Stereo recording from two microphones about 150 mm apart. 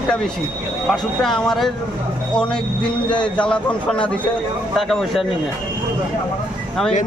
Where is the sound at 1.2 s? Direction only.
Centre (ahead or behind).